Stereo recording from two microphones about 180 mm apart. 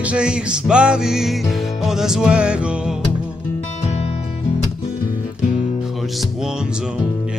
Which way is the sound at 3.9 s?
35° left (ahead or behind).